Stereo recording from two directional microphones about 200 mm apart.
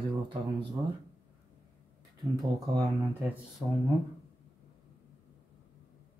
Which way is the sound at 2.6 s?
15° right (ahead or behind).